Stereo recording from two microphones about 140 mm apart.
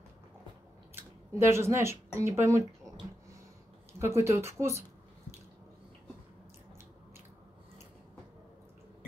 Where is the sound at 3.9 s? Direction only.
20° right (ahead or behind).